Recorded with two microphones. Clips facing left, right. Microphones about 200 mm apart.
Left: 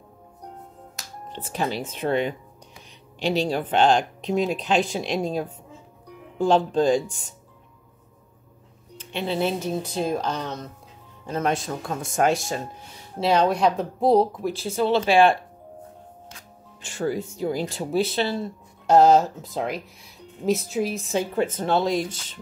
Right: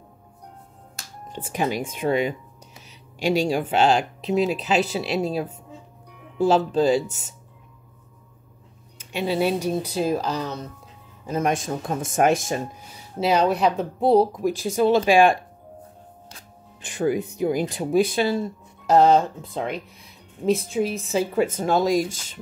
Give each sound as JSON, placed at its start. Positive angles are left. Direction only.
{"t": 1.3, "sound": "speech", "side_deg": -15}
{"t": 8.9, "sound": "speech", "side_deg": -10}
{"t": 11.2, "sound": "speech", "side_deg": -15}
{"t": 13.2, "sound": "speech", "side_deg": -5}
{"t": 14.3, "sound": "speech", "side_deg": -15}
{"t": 16.8, "sound": "speech", "side_deg": -15}
{"t": 18.9, "sound": "speech", "side_deg": 0}